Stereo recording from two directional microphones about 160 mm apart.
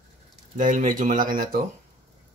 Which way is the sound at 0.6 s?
55° right (ahead or behind).